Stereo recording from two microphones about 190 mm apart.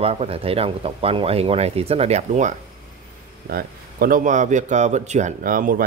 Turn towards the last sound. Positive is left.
turn(degrees=-45)  # may be behind; listen again after turning